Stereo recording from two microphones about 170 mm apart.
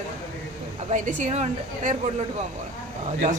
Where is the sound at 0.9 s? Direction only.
45° right (ahead or behind).